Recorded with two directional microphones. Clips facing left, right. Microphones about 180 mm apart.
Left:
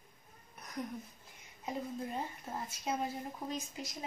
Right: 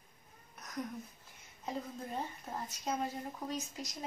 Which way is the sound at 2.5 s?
10° left (ahead or behind).